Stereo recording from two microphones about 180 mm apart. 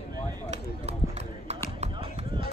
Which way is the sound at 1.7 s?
35° right (ahead or behind).